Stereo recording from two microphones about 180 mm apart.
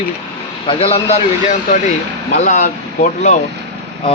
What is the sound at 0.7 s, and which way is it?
A man's voice, 30° left (ahead or behind).